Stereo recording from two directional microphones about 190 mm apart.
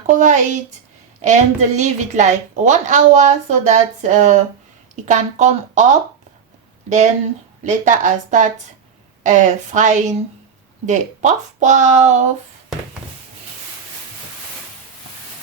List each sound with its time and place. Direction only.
0.1 s a woman's voice: 40° right (ahead or behind)
7.6 s a woman's voice: 40° right (ahead or behind)